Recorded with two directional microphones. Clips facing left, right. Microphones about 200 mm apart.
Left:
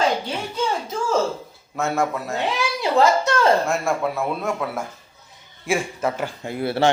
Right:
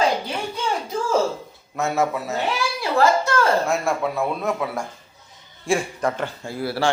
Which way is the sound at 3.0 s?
20° left (ahead or behind).